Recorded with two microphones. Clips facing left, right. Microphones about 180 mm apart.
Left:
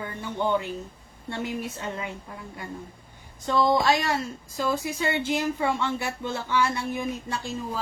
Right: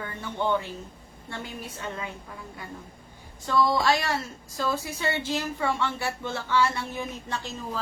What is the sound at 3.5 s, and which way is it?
Speech, 20° left (ahead or behind).